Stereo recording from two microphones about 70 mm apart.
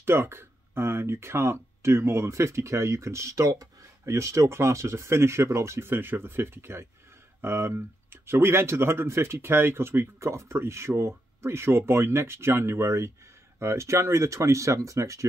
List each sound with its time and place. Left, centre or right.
0.0 s speech: right